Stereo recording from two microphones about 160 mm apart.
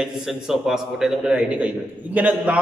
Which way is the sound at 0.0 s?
5° right (ahead or behind).